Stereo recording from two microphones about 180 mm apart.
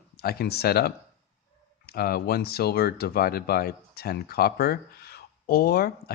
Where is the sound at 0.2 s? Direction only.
60° left (ahead or behind).